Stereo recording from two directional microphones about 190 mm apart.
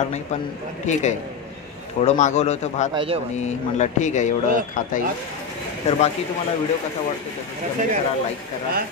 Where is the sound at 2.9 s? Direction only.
30° right (ahead or behind).